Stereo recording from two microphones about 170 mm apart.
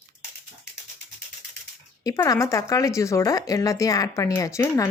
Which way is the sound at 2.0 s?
20° left (ahead or behind).